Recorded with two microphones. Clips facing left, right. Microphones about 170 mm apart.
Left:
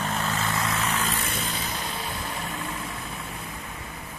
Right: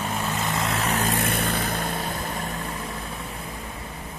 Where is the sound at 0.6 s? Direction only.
35° right (ahead or behind); by 1.9 s 55° right (ahead or behind).